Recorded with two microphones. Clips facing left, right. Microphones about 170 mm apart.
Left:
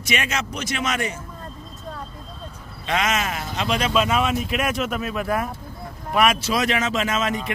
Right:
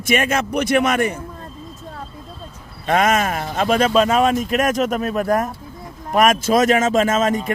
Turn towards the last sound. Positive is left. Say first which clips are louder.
# right 6 dB
turn(degrees=-45)  # may be behind; listen again after turning